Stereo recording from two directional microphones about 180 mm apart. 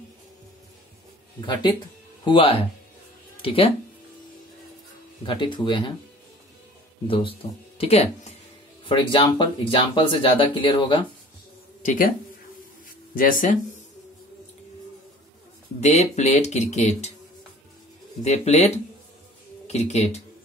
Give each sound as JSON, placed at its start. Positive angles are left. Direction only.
{"t": 1.4, "sound": "speech", "side_deg": 25}
{"t": 5.2, "sound": "speech", "side_deg": 25}
{"t": 7.1, "sound": "speech", "side_deg": 30}
{"t": 11.8, "sound": "speech", "side_deg": 45}
{"t": 13.1, "sound": "speech", "side_deg": 50}
{"t": 15.8, "sound": "speech", "side_deg": 40}
{"t": 18.2, "sound": "speech", "side_deg": 40}
{"t": 19.7, "sound": "speech", "side_deg": 35}